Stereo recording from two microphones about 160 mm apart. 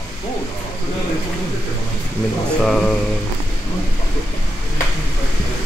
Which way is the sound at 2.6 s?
5° left (ahead or behind).